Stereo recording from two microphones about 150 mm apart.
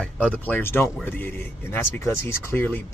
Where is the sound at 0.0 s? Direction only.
10° left (ahead or behind).